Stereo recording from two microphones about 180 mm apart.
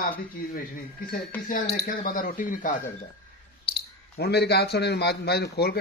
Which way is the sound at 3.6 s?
60° left (ahead or behind).